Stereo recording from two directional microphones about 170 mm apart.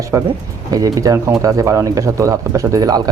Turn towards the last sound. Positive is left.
turn(degrees=-20)  # may be behind; listen again after turning